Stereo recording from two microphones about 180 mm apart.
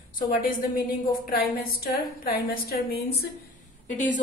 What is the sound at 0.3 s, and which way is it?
A woman's voice, 55° left (ahead or behind).